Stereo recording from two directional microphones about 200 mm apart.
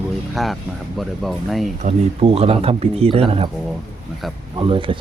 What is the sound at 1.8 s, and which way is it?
Speech, 30° right (ahead or behind).